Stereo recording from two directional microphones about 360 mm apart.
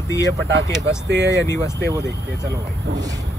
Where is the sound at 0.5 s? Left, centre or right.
Right.